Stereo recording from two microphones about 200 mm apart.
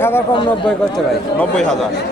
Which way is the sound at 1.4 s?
5° left (ahead or behind).